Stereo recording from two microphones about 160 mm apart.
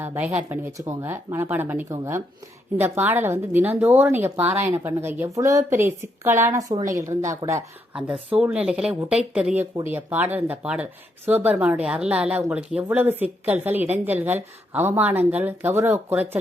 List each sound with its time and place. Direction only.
0.0 s a woman's voice: 15° right (ahead or behind)
7.9 s a woman's voice: 5° right (ahead or behind)